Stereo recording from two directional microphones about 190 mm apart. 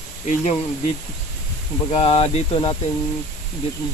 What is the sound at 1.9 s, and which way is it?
Speech, 35° left (ahead or behind).